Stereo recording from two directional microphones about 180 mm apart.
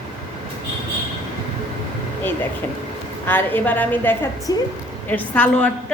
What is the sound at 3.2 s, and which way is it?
A woman's voice, 10° left (ahead or behind).